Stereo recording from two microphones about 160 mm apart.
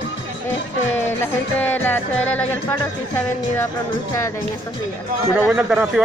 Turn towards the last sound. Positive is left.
turn(degrees=-5)  # may be behind; listen again after turning